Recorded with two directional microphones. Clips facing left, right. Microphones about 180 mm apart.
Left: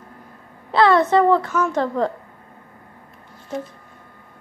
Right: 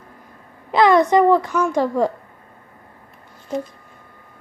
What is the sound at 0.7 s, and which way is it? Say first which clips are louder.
Speech: right 1 dB; 15° right (ahead or behind).